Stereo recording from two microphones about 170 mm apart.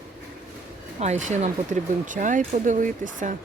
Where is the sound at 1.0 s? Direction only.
45° right (ahead or behind).